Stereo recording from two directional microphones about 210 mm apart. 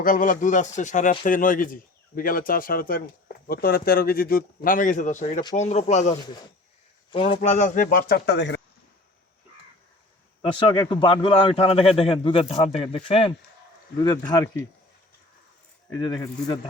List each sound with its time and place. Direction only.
0.0 s a man's voice: 40° left (ahead or behind); by 8.6 s 55° left (ahead or behind)
10.4 s a man's voice: 25° left (ahead or behind)
15.9 s a man's voice: 20° left (ahead or behind)